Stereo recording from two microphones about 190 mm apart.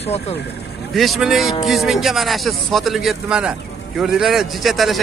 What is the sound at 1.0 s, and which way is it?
A man's voice, centre (ahead or behind).